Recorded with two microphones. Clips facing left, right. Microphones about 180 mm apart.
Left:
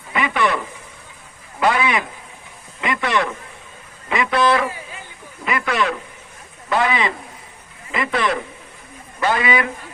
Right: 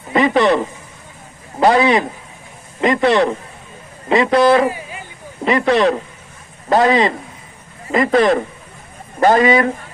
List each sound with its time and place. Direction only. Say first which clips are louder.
0.1 s a man's voice: right 7 dB; 35° right (ahead or behind)